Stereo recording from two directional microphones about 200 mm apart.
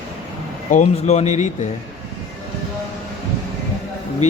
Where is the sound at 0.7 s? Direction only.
35° left (ahead or behind).